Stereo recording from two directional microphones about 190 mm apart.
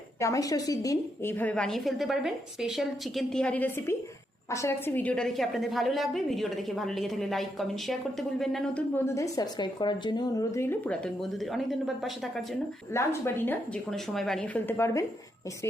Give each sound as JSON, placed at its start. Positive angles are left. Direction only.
{"t": 0.2, "sound": "a woman's voice", "side_deg": 20}
{"t": 9.0, "sound": "a woman's voice", "side_deg": 15}
{"t": 12.9, "sound": "a woman's voice", "side_deg": 15}